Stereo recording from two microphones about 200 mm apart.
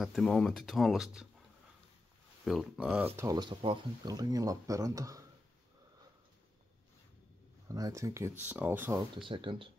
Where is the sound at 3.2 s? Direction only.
20° right (ahead or behind).